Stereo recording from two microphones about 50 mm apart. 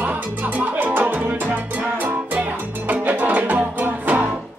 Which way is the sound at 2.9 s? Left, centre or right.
Right.